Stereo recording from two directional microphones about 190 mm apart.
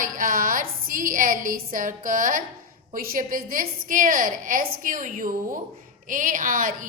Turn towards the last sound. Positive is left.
turn(degrees=-45)  # may be behind; listen again after turning